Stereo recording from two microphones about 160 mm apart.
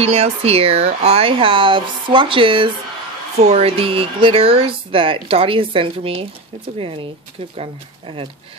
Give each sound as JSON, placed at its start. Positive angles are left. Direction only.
{"t": 0.0, "sound": "speech", "side_deg": -35}